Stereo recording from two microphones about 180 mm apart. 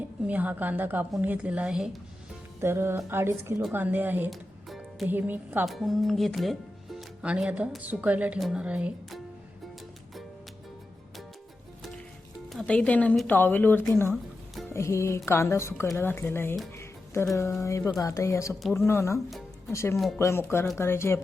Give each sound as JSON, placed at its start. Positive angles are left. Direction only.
{"t": 0.3, "sound": "a woman's voice", "side_deg": -10}
{"t": 12.5, "sound": "a woman's voice", "side_deg": 5}
{"t": 14.1, "sound": "music", "side_deg": 0}
{"t": 14.7, "sound": "a woman's voice", "side_deg": 15}